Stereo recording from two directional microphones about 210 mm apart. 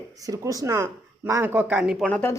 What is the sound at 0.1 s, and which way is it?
Speech, 15° right (ahead or behind).